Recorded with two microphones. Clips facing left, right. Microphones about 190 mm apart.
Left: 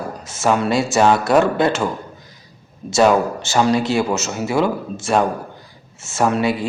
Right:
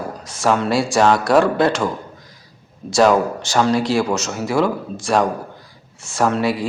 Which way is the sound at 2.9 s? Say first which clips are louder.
Even; 5° left (ahead or behind).